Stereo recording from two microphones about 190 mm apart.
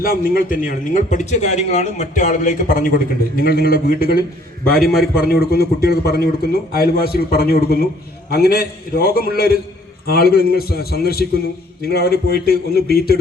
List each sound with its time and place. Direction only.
0.0 s a man's voice: 50° left (ahead or behind)
1.1 s a man's voice: 40° left (ahead or behind); by 13.1 s 55° left (ahead or behind)